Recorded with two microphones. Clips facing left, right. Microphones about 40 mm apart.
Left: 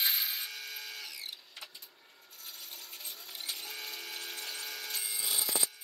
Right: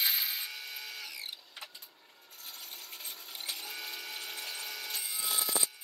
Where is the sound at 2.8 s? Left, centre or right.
Right.